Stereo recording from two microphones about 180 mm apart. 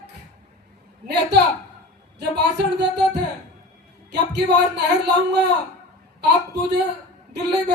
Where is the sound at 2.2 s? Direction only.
70° right (ahead or behind).